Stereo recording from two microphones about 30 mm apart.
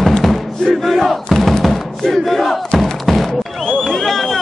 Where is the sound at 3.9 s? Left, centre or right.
Centre.